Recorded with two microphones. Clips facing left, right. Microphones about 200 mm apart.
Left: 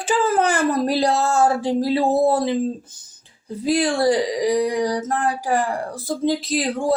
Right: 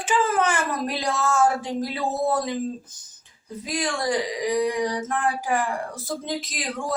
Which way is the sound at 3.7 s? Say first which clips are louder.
Left 8 dB; 30° left (ahead or behind).